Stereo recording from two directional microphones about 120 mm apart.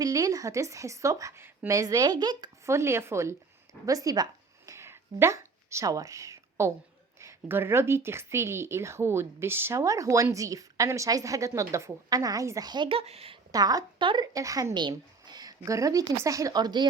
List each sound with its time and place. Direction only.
0.0 s speech: 30° right (ahead or behind)
2.6 s speech: 25° right (ahead or behind)
3.8 s a sound: 30° right (ahead or behind)
7.2 s speech: 20° right (ahead or behind); by 13.0 s 40° right (ahead or behind)
13.0 s speech: 55° right (ahead or behind)
13.5 s a woman's voice: 30° right (ahead or behind)
14.3 s speech: 30° right (ahead or behind)